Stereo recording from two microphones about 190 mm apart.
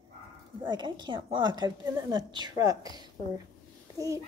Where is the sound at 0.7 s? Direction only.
25° right (ahead or behind).